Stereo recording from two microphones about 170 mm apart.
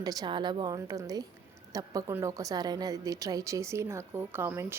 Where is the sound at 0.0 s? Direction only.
20° right (ahead or behind).